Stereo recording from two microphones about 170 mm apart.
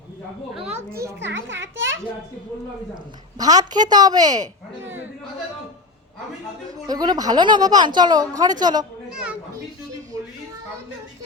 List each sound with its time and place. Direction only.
1.2 s a child's voice: 90° right
3.3 s a woman's voice: 20° right (ahead or behind)
6.8 s a woman's voice: 25° right (ahead or behind)